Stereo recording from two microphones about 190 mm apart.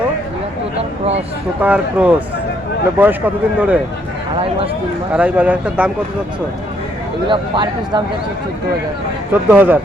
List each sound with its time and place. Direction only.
0.8 s a sound: 35° right (ahead or behind)
1.6 s speech: 5° right (ahead or behind)
5.1 s speech: 5° right (ahead or behind)
7.3 s speech: 25° right (ahead or behind)
9.5 s speech: 10° right (ahead or behind)